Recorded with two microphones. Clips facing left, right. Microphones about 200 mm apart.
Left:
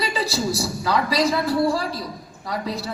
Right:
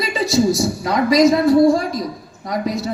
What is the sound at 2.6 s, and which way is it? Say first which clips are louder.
Speech: right 8 dB; 30° left (ahead or behind).